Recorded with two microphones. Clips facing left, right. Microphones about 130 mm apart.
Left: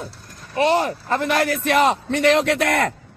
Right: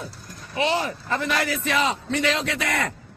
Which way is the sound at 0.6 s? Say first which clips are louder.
Left 5 dB; 45° left (ahead or behind).